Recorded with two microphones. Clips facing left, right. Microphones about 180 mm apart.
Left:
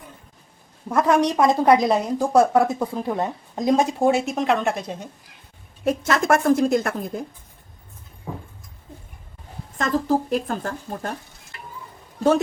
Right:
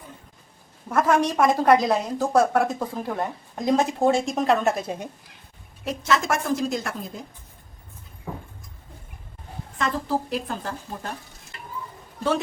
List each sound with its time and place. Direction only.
0.9 s a woman's voice: 15° left (ahead or behind); by 5.0 s 5° right (ahead or behind)
5.8 s a woman's voice: 55° left (ahead or behind)
9.7 s a woman's voice: 45° left (ahead or behind)